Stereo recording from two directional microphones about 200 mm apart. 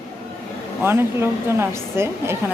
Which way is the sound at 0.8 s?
10° right (ahead or behind).